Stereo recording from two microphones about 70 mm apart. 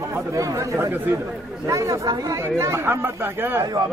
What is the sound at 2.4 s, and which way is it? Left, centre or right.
Speech, right.